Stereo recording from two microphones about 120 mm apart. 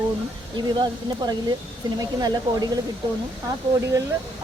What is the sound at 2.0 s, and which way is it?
Speech, 35° right (ahead or behind).